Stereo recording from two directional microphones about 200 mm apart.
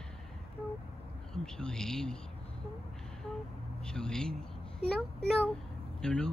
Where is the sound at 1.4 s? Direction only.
5° left (ahead or behind).